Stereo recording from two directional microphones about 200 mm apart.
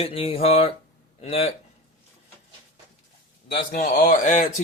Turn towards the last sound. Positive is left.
turn(degrees=40)  # may be behind; listen again after turning